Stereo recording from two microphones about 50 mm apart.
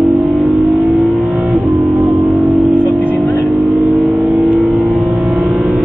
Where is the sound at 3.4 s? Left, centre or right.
Right.